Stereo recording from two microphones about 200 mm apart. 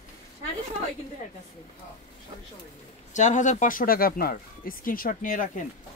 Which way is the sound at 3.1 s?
35° left (ahead or behind).